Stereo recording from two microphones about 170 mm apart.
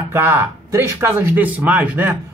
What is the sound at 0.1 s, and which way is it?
Speech, 15° right (ahead or behind).